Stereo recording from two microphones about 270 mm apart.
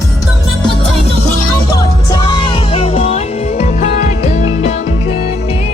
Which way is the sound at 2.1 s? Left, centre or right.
Centre.